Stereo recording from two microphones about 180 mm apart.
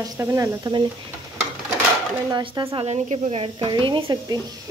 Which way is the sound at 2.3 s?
25° right (ahead or behind).